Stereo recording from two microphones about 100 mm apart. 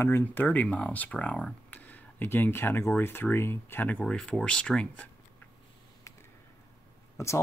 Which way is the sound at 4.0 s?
5° left (ahead or behind).